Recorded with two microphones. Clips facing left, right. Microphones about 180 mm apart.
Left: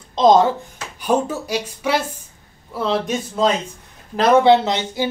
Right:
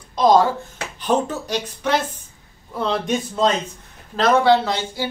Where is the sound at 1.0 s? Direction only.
10° left (ahead or behind).